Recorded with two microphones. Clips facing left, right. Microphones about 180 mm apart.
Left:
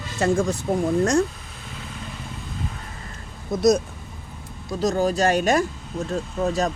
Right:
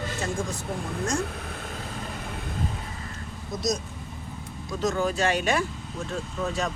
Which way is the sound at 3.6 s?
55° left (ahead or behind).